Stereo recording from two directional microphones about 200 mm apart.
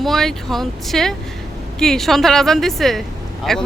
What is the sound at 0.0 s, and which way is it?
A man's voice, centre (ahead or behind).